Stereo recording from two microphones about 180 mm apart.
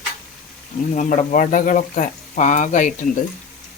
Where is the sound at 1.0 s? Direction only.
45° left (ahead or behind).